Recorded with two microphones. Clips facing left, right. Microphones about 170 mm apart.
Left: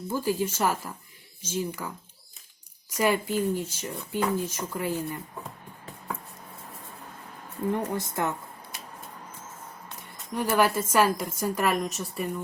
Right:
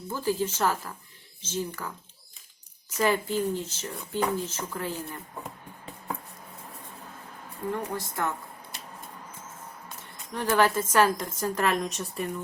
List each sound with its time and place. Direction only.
0.1 s a woman's voice: 10° left (ahead or behind)
2.9 s a woman's voice: 10° left (ahead or behind)
7.7 s a woman's voice: 20° left (ahead or behind)
10.3 s a woman's voice: 10° left (ahead or behind)